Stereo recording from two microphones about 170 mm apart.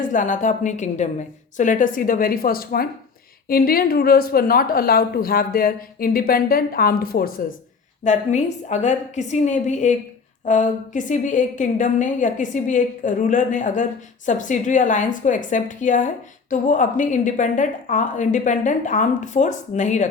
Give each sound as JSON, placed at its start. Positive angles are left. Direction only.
{"t": 0.0, "sound": "a woman's voice", "side_deg": 50}
{"t": 8.0, "sound": "a woman's voice", "side_deg": 45}